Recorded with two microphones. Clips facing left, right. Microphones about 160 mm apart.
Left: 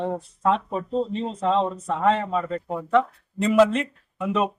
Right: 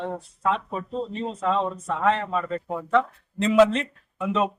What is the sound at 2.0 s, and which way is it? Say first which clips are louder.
A man's voice: left 2 dB; 15° left (ahead or behind).